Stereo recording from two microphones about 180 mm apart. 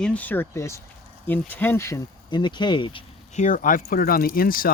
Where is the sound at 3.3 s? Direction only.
45° left (ahead or behind).